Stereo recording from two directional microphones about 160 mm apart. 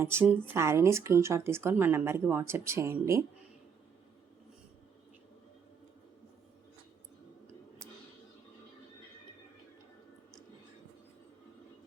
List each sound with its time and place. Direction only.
0.0 s speech: 15° right (ahead or behind)